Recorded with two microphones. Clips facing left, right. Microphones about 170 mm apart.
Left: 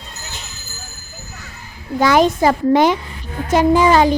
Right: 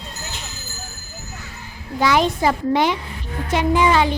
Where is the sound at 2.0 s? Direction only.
45° left (ahead or behind).